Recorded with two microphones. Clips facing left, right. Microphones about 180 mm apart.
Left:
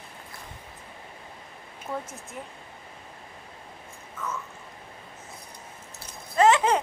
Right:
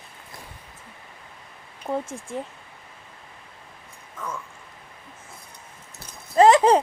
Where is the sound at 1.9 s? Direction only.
30° right (ahead or behind).